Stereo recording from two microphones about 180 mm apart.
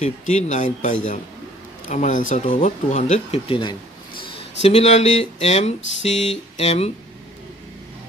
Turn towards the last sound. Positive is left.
turn(degrees=35)  # may be behind; listen again after turning